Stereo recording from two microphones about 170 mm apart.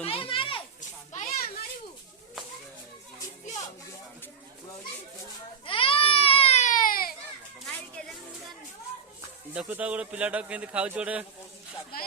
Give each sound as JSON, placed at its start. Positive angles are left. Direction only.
{"t": 0.0, "sound": "a sound", "side_deg": 35}
{"t": 0.8, "sound": "children playing", "side_deg": 45}
{"t": 5.6, "sound": "baby cry", "side_deg": 30}
{"t": 9.6, "sound": "a man's voice", "side_deg": -10}